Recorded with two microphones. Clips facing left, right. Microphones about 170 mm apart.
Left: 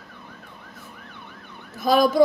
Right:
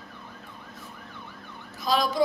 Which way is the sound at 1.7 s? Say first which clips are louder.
Left 7 dB; 55° left (ahead or behind).